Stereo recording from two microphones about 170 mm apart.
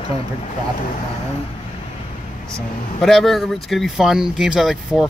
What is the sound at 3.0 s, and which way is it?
Speech, centre (ahead or behind).